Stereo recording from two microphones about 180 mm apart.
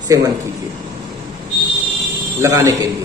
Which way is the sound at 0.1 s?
20° right (ahead or behind).